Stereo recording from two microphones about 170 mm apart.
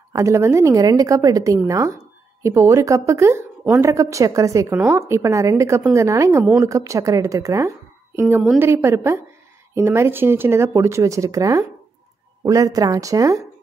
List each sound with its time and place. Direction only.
0.1 s a woman's voice: 15° right (ahead or behind)